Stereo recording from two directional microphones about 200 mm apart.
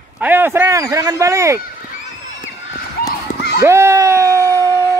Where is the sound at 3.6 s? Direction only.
15° right (ahead or behind).